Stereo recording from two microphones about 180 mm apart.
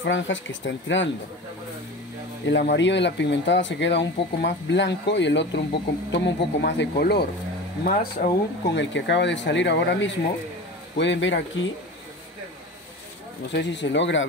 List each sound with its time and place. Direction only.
0.0 s speech: 90° left
2.4 s speech: 80° left
7.8 s speech: 55° left (ahead or behind)
8.7 s speech: 75° left (ahead or behind)
11.0 s speech: 90° left
13.5 s speech: 75° left (ahead or behind)